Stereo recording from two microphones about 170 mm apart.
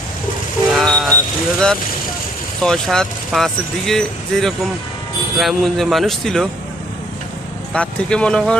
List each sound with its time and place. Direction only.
0.7 s vehicle: centre (ahead or behind)
1.5 s speech: 5° left (ahead or behind)
7.7 s speech: 5° left (ahead or behind)